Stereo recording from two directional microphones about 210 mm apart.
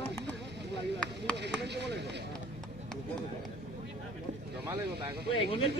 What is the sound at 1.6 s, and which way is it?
Speech, 55° right (ahead or behind).